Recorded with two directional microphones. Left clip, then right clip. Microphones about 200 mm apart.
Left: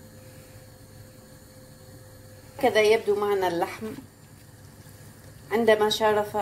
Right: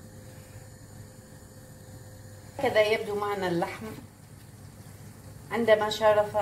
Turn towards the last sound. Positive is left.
turn(degrees=55)  # may be behind; listen again after turning